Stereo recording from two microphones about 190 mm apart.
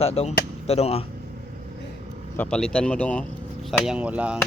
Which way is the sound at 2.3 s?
5° left (ahead or behind).